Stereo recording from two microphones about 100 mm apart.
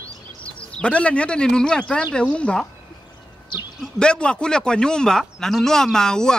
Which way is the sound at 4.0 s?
10° left (ahead or behind).